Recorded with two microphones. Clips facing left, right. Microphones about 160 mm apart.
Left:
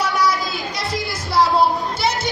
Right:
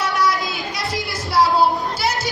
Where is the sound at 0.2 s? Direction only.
Centre (ahead or behind).